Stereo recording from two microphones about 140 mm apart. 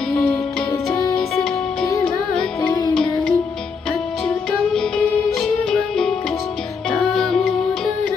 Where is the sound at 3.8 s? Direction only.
5° left (ahead or behind).